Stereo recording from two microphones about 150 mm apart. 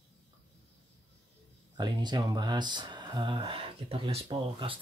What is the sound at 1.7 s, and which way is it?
Speech, 30° right (ahead or behind).